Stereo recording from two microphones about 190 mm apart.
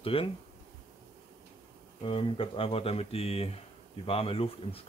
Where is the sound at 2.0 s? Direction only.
30° left (ahead or behind).